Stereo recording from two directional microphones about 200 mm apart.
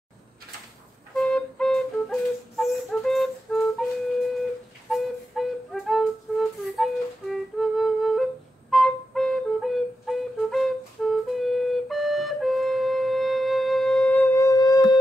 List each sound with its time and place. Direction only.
1.1 s flute: 5° left (ahead or behind)
4.8 s music: centre (ahead or behind); by 15.0 s 20° left (ahead or behind)